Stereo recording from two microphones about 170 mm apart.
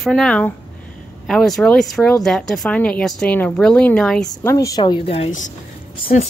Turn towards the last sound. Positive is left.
turn(degrees=50)  # may be behind; listen again after turning